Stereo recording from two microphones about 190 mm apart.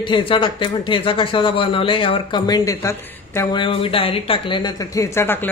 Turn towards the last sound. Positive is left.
turn(degrees=10)  # may be behind; listen again after turning